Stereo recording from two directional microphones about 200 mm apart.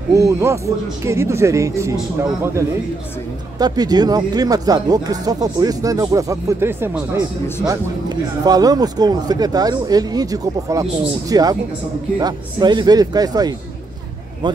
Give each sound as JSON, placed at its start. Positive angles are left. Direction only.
{"t": 0.1, "sound": "speech", "side_deg": -15}
{"t": 3.5, "sound": "speech", "side_deg": -20}